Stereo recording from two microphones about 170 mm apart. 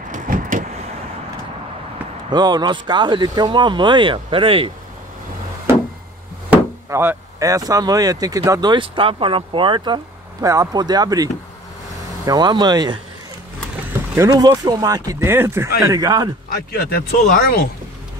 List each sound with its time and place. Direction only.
0.1 s vehicle: 55° right (ahead or behind)
2.3 s speech: 25° right (ahead or behind)
6.5 s speech: 10° right (ahead or behind)
12.3 s speech: 25° right (ahead or behind)
14.1 s speech: 20° right (ahead or behind)
16.7 s speech: 65° left (ahead or behind)